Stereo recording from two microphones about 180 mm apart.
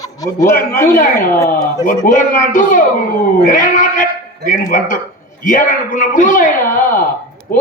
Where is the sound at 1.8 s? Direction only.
45° left (ahead or behind).